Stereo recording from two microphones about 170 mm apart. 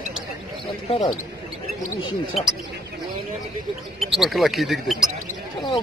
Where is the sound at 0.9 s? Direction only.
35° left (ahead or behind).